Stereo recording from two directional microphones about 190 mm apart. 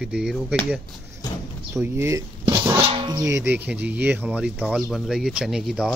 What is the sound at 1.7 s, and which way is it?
Music, 15° right (ahead or behind).